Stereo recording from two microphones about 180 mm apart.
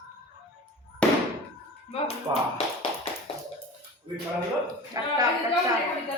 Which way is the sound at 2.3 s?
20° right (ahead or behind).